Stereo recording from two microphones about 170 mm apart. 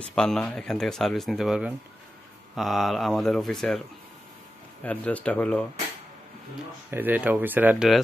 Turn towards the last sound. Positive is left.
turn(degrees=-5)  # may be behind; listen again after turning